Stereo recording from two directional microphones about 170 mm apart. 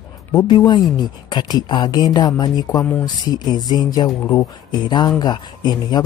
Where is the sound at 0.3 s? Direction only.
20° left (ahead or behind).